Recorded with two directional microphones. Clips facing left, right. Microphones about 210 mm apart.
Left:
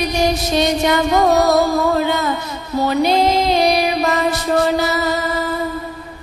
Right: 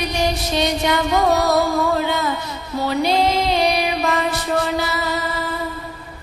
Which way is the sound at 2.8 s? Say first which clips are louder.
Left 3 dB; 45° left (ahead or behind).